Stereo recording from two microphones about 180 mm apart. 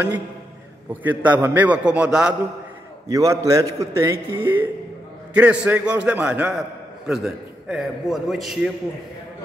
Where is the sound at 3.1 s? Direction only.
20° right (ahead or behind); by 8.7 s centre (ahead or behind).